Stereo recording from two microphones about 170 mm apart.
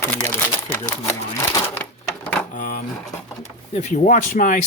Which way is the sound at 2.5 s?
55° left (ahead or behind).